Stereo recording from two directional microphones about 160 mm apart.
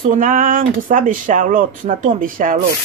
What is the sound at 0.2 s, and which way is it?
Speech, 55° right (ahead or behind).